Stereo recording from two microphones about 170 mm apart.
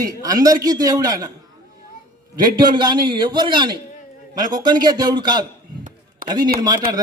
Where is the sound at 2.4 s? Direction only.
25° right (ahead or behind).